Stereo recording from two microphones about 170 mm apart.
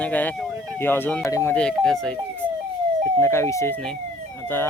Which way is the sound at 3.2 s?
15° left (ahead or behind).